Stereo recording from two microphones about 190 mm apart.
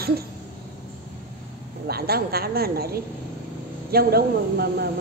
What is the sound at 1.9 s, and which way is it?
Speech, 55° right (ahead or behind).